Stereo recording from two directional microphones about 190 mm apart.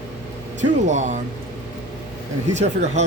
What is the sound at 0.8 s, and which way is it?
Speech, 40° right (ahead or behind).